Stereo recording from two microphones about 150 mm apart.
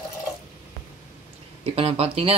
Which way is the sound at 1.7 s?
40° right (ahead or behind).